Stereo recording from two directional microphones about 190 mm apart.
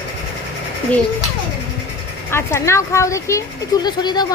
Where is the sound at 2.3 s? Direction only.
15° left (ahead or behind).